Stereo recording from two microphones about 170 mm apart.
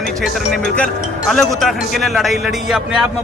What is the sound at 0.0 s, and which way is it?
A man's voice, centre (ahead or behind).